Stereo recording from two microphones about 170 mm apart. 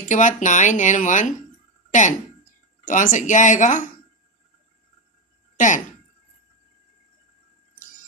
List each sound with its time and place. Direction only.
0.1 s speech: 45° left (ahead or behind)